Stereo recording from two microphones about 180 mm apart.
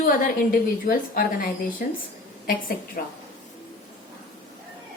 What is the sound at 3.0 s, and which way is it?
Speech, 55° left (ahead or behind).